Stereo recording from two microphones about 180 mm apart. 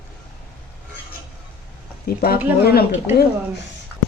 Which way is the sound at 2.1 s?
60° left (ahead or behind).